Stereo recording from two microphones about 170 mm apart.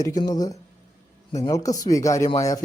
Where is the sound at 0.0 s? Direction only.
20° left (ahead or behind).